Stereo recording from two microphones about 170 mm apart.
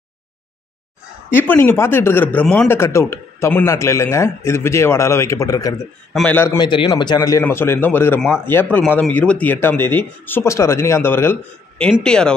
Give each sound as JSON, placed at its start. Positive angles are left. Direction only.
{"t": 1.3, "sound": "a man's voice", "side_deg": 15}
{"t": 6.1, "sound": "a man's voice", "side_deg": 10}
{"t": 6.6, "sound": "a man's voice", "side_deg": 30}